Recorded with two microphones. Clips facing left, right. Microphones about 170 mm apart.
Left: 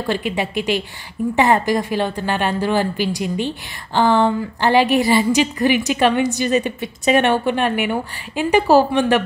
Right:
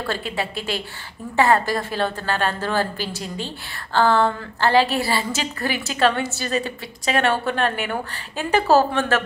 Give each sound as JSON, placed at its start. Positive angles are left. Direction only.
{"t": 0.0, "sound": "a woman's voice", "side_deg": 15}